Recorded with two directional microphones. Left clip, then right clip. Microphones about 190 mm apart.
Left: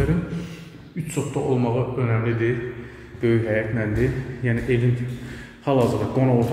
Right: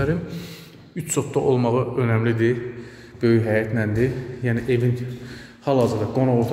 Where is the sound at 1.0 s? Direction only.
60° right (ahead or behind); by 4.7 s 30° right (ahead or behind).